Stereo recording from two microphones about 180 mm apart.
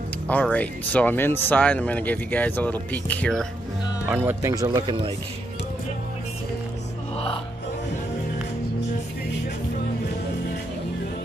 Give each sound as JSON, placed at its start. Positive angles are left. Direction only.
{"t": 0.3, "sound": "speech", "side_deg": 5}
{"t": 4.0, "sound": "speech", "side_deg": -10}
{"t": 4.6, "sound": "a man's voice", "side_deg": -25}